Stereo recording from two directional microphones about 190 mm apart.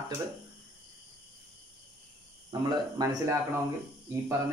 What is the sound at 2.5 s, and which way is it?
Speech, 15° right (ahead or behind).